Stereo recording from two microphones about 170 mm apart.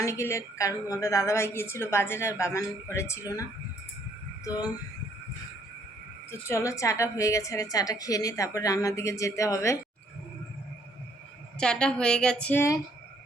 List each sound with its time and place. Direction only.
0.0 s a woman's voice: 15° left (ahead or behind)
6.5 s a woman's voice: 20° left (ahead or behind)
11.6 s a woman's voice: 5° left (ahead or behind)